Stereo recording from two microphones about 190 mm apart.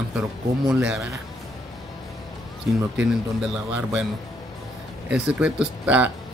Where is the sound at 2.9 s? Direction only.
5° right (ahead or behind).